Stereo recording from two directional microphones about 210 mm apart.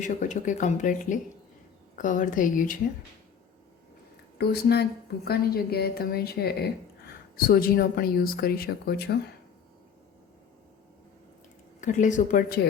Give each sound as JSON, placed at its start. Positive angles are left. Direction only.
{"t": 0.0, "sound": "speech", "side_deg": 35}
{"t": 4.4, "sound": "a woman's voice", "side_deg": 50}
{"t": 11.8, "sound": "speech", "side_deg": 35}